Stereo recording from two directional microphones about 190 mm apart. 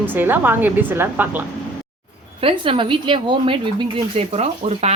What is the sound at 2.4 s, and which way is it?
Speech, 30° right (ahead or behind).